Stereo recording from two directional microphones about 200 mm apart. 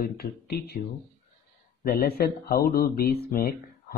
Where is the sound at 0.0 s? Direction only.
50° left (ahead or behind).